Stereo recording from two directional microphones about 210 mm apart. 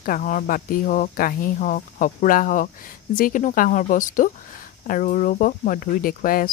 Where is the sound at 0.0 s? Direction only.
40° left (ahead or behind).